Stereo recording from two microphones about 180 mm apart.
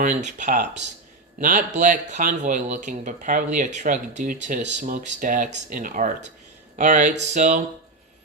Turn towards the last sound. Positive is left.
turn(degrees=-40)  # may be behind; listen again after turning